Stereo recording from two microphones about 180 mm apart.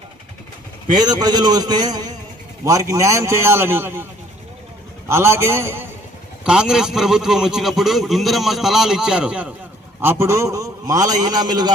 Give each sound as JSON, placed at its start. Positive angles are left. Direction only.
{"t": 1.0, "sound": "a man's voice", "side_deg": -25}
{"t": 5.0, "sound": "a man's voice", "side_deg": -15}
{"t": 6.4, "sound": "a man's voice", "side_deg": -5}